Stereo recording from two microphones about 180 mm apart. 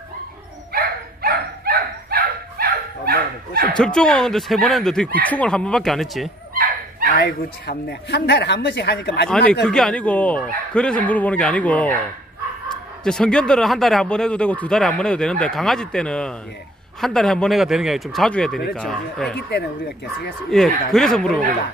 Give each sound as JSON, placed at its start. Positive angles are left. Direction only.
{"t": 0.7, "sound": "dog", "side_deg": -55}
{"t": 3.7, "sound": "a man's voice", "side_deg": 5}
{"t": 7.2, "sound": "a woman's voice", "side_deg": 60}
{"t": 9.3, "sound": "a man's voice", "side_deg": 5}
{"t": 13.0, "sound": "a man's voice", "side_deg": 5}
{"t": 20.4, "sound": "a man's voice", "side_deg": 0}